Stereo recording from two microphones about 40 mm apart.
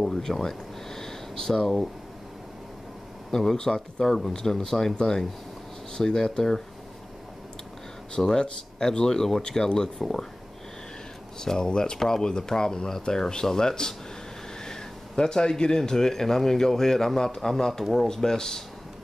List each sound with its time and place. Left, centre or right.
0.0 s speech: centre
3.3 s speech: centre
8.3 s speech: centre
10.0 s speech: centre
11.4 s speech: centre